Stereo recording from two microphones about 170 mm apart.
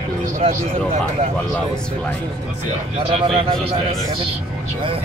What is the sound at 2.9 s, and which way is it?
Speech, 35° right (ahead or behind).